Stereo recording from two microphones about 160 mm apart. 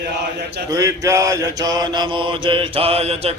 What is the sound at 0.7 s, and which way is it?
Mantra, 20° right (ahead or behind).